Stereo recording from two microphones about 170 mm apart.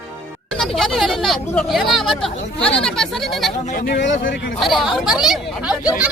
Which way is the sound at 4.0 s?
90° left.